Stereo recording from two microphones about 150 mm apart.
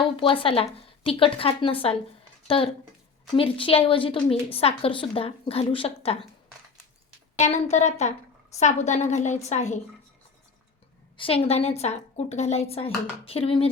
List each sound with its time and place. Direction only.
0.2 s a woman's voice: 35° left (ahead or behind)
7.3 s speech: 50° left (ahead or behind)
11.2 s speech: 40° left (ahead or behind)